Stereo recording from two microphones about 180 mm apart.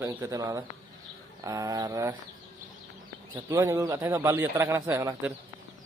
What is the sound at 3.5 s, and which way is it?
Speech, 15° right (ahead or behind).